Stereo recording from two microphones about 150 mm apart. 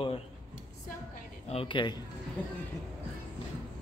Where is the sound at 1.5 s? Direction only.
35° left (ahead or behind).